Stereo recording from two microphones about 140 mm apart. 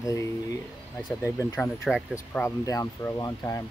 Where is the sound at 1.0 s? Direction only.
25° left (ahead or behind).